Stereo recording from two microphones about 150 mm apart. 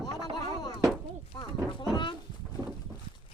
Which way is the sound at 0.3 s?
30° left (ahead or behind).